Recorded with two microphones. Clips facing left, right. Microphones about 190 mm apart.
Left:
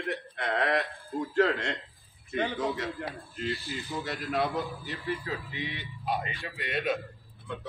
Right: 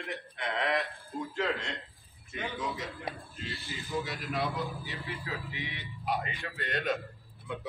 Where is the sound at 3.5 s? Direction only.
Centre (ahead or behind).